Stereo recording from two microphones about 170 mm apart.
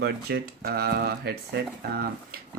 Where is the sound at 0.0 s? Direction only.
70° right (ahead or behind).